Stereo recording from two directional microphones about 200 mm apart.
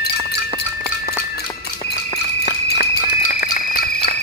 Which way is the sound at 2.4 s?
50° left (ahead or behind).